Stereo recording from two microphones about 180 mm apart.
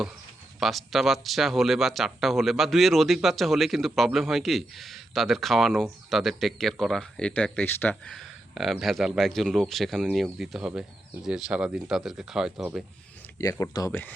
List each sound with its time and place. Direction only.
0.6 s speech: centre (ahead or behind)
13.4 s speech: 20° left (ahead or behind)